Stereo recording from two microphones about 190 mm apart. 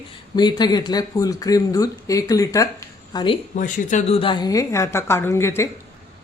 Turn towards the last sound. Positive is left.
turn(degrees=15)  # may be behind; listen again after turning